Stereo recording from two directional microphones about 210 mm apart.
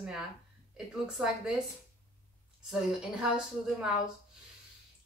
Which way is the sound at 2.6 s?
5° right (ahead or behind).